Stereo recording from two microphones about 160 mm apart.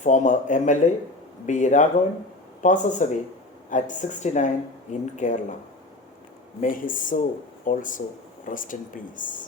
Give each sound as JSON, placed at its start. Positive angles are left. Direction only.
{"t": 0.0, "sound": "speech", "side_deg": 50}
{"t": 6.6, "sound": "speech", "side_deg": 55}